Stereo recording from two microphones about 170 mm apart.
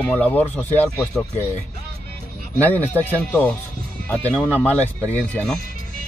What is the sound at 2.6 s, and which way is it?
Speech, 10° left (ahead or behind).